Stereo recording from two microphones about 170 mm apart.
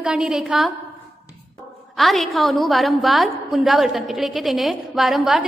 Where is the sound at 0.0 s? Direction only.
5° right (ahead or behind).